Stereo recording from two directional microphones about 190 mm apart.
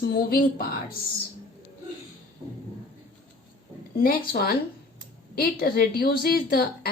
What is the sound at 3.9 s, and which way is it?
A woman's voice, 55° left (ahead or behind).